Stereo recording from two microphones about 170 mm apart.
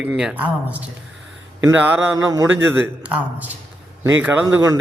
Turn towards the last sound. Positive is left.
turn(degrees=-10)  # may be behind; listen again after turning